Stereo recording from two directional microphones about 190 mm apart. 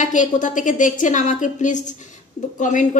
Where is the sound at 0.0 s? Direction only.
40° left (ahead or behind).